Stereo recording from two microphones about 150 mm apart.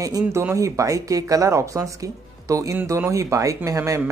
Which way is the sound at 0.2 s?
15° right (ahead or behind).